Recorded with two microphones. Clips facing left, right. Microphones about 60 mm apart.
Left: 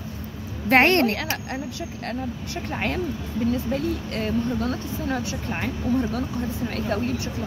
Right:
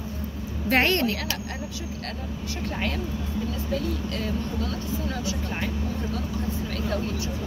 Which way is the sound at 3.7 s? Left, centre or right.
Left.